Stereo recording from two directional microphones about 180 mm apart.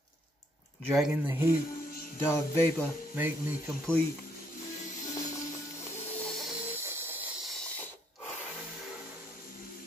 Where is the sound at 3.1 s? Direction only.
15° right (ahead or behind).